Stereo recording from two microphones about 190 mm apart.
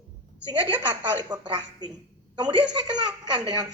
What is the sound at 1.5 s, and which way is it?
A woman's voice, 20° right (ahead or behind).